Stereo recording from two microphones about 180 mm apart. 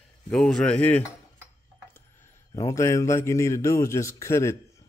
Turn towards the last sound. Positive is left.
turn(degrees=15)  # may be behind; listen again after turning